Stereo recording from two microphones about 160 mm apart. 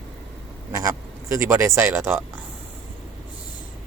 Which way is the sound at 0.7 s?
20° right (ahead or behind).